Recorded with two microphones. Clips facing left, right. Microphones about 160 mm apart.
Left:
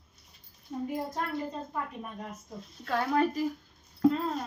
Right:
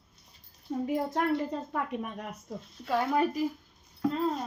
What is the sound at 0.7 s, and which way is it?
A woman's voice, 75° right (ahead or behind).